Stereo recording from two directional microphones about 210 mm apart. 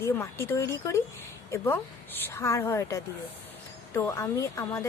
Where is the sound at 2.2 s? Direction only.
10° left (ahead or behind).